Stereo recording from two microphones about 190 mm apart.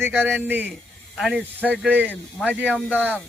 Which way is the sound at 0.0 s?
10° right (ahead or behind).